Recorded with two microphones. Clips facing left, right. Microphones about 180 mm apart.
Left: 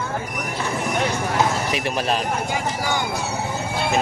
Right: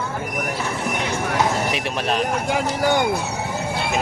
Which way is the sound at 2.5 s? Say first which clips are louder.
Right 5 dB; 60° right (ahead or behind).